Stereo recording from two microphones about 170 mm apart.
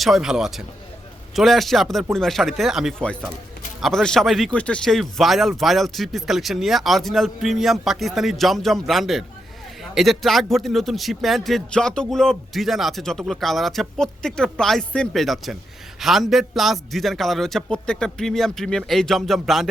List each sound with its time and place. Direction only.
0.0 s a man's voice: centre (ahead or behind)